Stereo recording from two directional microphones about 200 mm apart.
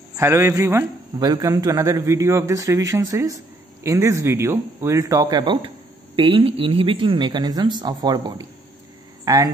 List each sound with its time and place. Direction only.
0.1 s a man's voice: 15° right (ahead or behind)